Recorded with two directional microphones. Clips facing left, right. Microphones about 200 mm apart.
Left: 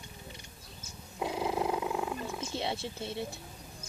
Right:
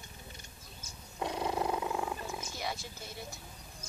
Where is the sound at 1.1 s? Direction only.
5° left (ahead or behind).